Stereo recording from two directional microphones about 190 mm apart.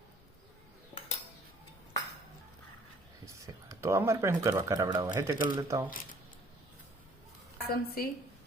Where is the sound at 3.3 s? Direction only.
15° right (ahead or behind).